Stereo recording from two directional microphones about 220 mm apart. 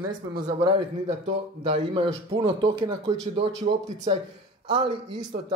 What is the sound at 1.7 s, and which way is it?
Speech, 25° right (ahead or behind).